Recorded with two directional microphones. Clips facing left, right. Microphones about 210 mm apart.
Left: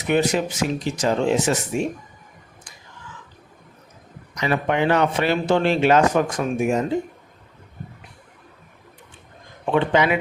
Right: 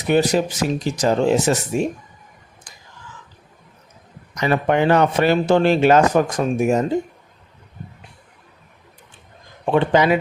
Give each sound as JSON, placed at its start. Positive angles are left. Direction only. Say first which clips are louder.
{"t": 0.1, "sound": "speech", "louder": "right 3 dB", "side_deg": -35}
{"t": 4.4, "sound": "a man's voice", "louder": "right 3 dB", "side_deg": -45}
{"t": 9.7, "sound": "speech", "louder": "right 3 dB", "side_deg": -40}